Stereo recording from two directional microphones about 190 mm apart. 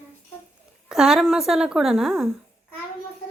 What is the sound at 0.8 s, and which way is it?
Speech, 5° right (ahead or behind).